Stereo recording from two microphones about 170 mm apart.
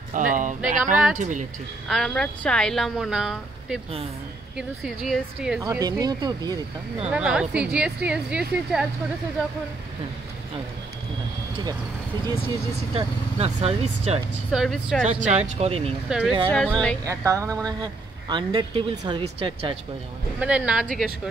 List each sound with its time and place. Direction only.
0.1 s speech: 50° right (ahead or behind)
1.9 s a woman's voice: centre (ahead or behind)
5.6 s speech: 20° right (ahead or behind)
7.1 s a woman's voice: 5° right (ahead or behind)
12.9 s speech: 35° right (ahead or behind)
14.5 s a woman's voice: centre (ahead or behind)
15.0 s speech: 45° right (ahead or behind)
16.1 s a woman's voice: 5° right (ahead or behind)
17.0 s speech: 20° right (ahead or behind)
20.3 s a woman's voice: 5° right (ahead or behind)